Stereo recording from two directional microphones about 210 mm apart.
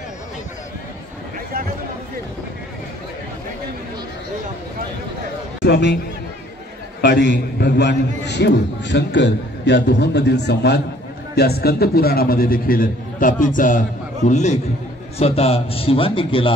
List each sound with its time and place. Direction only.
5.7 s a man's voice: 55° left (ahead or behind)
7.0 s a man's voice: 50° left (ahead or behind); by 16.5 s 25° left (ahead or behind)